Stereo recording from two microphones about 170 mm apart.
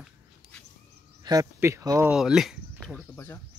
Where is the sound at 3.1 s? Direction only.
10° left (ahead or behind).